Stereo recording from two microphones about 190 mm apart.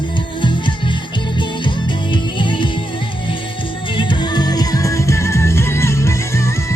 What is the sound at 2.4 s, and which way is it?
Music, 25° left (ahead or behind).